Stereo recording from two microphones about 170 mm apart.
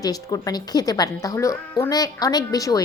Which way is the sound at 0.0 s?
20° left (ahead or behind).